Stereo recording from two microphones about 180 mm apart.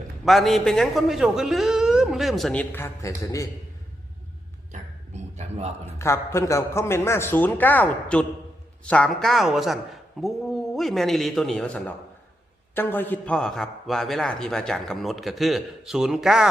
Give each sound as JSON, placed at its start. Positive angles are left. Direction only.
{"t": 0.3, "sound": "a man's voice", "side_deg": 0}
{"t": 4.7, "sound": "a sound", "side_deg": -40}
{"t": 6.0, "sound": "a man's voice", "side_deg": 15}